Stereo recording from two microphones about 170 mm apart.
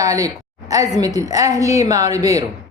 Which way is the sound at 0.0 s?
20° right (ahead or behind).